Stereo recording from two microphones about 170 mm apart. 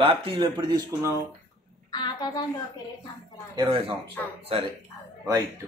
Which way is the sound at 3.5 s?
25° right (ahead or behind).